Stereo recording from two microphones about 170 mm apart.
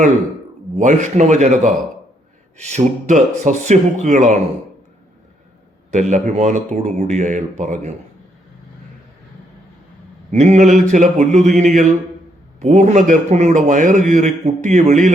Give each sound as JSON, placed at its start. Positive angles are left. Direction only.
{"t": 0.8, "sound": "a man's voice", "side_deg": -45}
{"t": 5.9, "sound": "a man's voice", "side_deg": -45}
{"t": 10.3, "sound": "a man's voice", "side_deg": -40}